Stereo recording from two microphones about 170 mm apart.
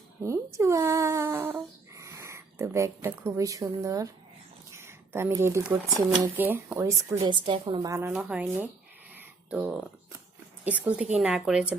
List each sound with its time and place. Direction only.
0.3 s humming: 15° right (ahead or behind)
4.7 s a sound: 15° right (ahead or behind)
6.1 s speech: 15° right (ahead or behind)
7.3 s a woman's voice: 30° right (ahead or behind)
7.9 s speech: 15° right (ahead or behind)
8.1 s speech: 5° right (ahead or behind)